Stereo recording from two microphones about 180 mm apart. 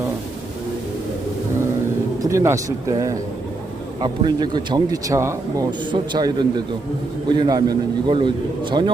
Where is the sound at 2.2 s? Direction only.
15° right (ahead or behind).